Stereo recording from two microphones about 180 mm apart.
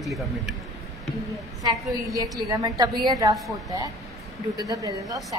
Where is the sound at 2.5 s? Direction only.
20° right (ahead or behind).